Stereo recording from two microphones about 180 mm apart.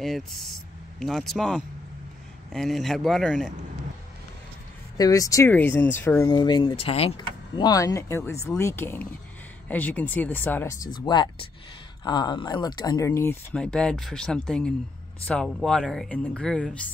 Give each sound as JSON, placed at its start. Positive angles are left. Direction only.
{"t": 0.0, "sound": "speech", "side_deg": 0}
{"t": 4.9, "sound": "speech", "side_deg": 20}